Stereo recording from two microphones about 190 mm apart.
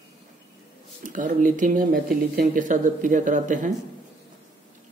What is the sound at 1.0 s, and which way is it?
Speech, 45° right (ahead or behind).